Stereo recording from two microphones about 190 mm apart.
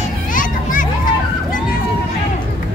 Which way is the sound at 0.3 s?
45° left (ahead or behind).